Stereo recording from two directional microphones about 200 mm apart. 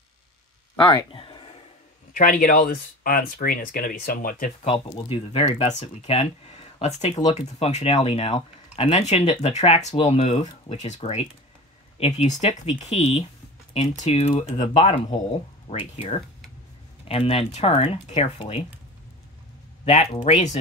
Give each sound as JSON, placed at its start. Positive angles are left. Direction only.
{"t": 0.8, "sound": "speech", "side_deg": 25}
{"t": 2.1, "sound": "speech", "side_deg": 40}
{"t": 4.6, "sound": "speech", "side_deg": 30}
{"t": 19.8, "sound": "speech", "side_deg": 30}